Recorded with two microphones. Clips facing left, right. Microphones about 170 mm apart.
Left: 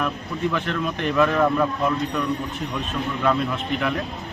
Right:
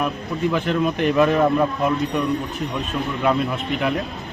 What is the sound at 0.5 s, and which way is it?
Speech, 15° right (ahead or behind).